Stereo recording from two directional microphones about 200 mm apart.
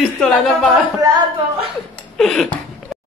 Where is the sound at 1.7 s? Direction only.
Centre (ahead or behind).